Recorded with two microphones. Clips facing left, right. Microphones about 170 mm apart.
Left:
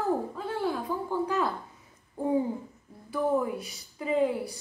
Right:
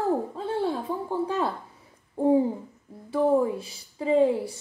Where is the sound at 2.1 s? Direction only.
30° right (ahead or behind).